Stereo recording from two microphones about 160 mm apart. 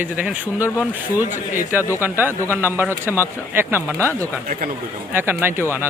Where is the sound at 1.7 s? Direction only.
10° right (ahead or behind).